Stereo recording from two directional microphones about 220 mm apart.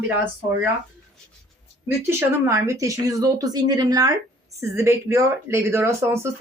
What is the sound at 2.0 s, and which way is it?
Speech, 10° right (ahead or behind).